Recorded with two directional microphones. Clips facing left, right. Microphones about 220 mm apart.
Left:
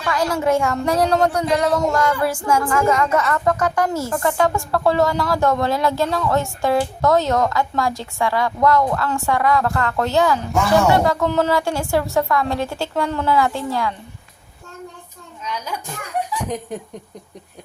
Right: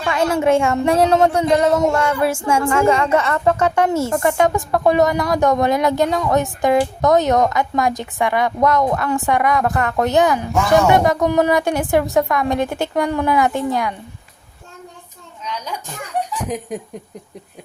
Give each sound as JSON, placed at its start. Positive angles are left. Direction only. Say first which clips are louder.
{"t": 0.0, "sound": "a woman's voice", "louder": "right 3 dB", "side_deg": -25}